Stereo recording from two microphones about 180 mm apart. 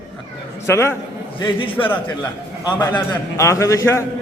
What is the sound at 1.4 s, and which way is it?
Speech, 30° left (ahead or behind).